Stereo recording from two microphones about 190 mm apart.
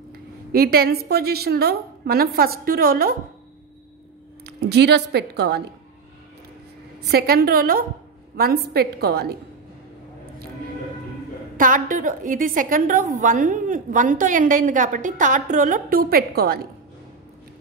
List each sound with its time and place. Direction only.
0.1 s a woman's voice: 55° right (ahead or behind)
4.5 s a woman's voice: 60° right (ahead or behind)
7.0 s a woman's voice: 55° right (ahead or behind)
11.5 s a woman's voice: 45° right (ahead or behind)